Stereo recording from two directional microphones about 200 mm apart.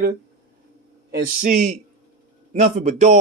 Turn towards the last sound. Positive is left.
turn(degrees=-40)  # may be behind; listen again after turning